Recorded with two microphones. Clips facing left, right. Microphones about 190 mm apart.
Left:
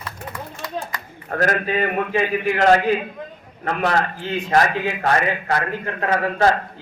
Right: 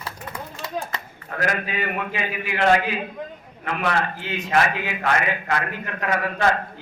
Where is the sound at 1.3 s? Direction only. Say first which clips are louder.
Left 5 dB; 40° left (ahead or behind).